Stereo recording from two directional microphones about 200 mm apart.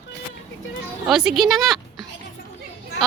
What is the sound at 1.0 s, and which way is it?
Female singing, centre (ahead or behind).